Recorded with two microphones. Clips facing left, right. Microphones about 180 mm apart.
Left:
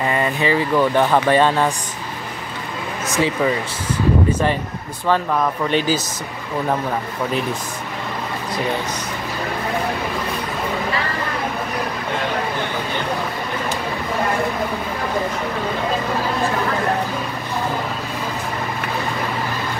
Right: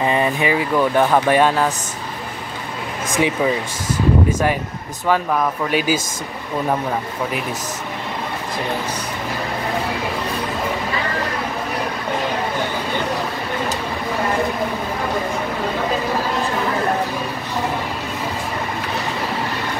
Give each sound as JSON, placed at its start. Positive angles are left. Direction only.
{"t": 0.0, "sound": "speech", "side_deg": -20}
{"t": 3.2, "sound": "speech", "side_deg": -15}
{"t": 5.7, "sound": "speech", "side_deg": -10}